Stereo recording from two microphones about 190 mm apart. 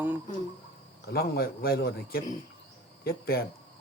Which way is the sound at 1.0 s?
55° left (ahead or behind).